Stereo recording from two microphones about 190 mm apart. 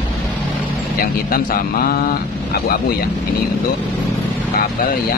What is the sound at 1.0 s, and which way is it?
Speech, 50° left (ahead or behind).